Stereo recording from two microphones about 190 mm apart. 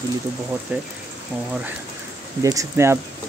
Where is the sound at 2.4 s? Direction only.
15° right (ahead or behind).